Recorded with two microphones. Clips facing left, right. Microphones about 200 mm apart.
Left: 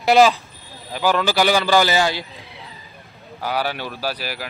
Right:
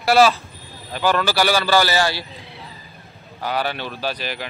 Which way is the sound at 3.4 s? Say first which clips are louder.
Even; 10° left (ahead or behind).